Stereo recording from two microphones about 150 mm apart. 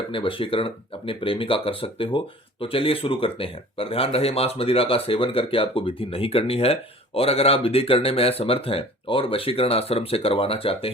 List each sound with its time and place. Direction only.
0.1 s speech: 35° left (ahead or behind)